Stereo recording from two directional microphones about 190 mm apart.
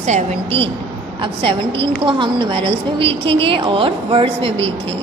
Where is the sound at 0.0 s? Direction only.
35° right (ahead or behind).